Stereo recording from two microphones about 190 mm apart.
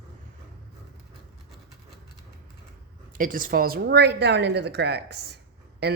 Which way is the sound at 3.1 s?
45° right (ahead or behind).